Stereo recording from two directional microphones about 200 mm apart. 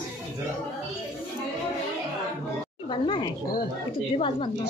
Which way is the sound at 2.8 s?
25° left (ahead or behind).